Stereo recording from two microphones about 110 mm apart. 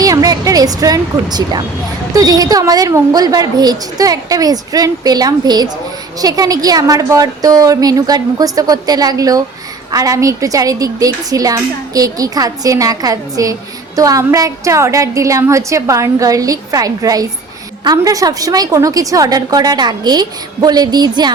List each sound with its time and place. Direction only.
0.0 s a woman's voice: 35° right (ahead or behind)